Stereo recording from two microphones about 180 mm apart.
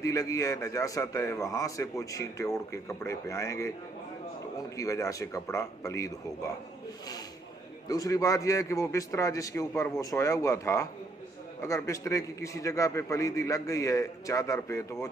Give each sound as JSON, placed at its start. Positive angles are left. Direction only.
{"t": 0.0, "sound": "a man's voice", "side_deg": 15}
{"t": 4.7, "sound": "a man's voice", "side_deg": 20}
{"t": 7.9, "sound": "a man's voice", "side_deg": 20}